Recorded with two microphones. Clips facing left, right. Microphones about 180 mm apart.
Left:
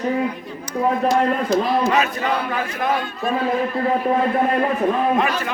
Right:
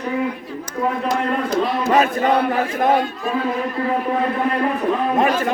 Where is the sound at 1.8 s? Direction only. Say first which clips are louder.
Right 3 dB; 50° right (ahead or behind).